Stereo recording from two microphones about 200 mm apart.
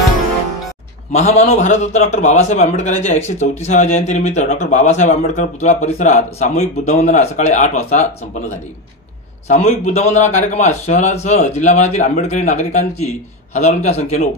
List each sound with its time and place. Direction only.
1.1 s speech: 35° left (ahead or behind)